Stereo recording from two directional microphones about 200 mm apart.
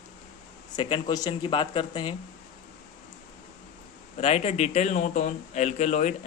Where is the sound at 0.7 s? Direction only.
25° left (ahead or behind).